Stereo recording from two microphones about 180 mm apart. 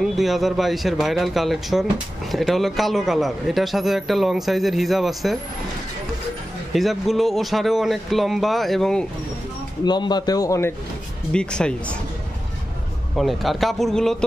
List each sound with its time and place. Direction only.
0.0 s a man's voice: centre (ahead or behind)
6.7 s a man's voice: centre (ahead or behind)
9.8 s a man's voice: 25° left (ahead or behind)
11.3 s a man's voice: 5° left (ahead or behind)
13.1 s a man's voice: centre (ahead or behind)